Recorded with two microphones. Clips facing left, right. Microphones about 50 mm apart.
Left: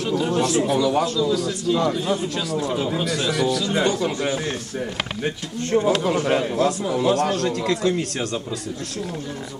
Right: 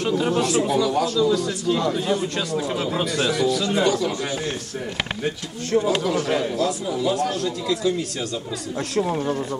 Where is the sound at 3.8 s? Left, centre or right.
Left.